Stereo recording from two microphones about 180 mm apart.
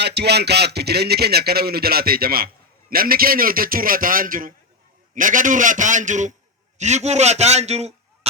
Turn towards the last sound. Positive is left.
turn(degrees=-35)  # may be behind; listen again after turning